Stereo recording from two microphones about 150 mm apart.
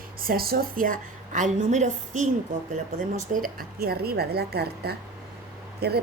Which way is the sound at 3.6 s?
90° right.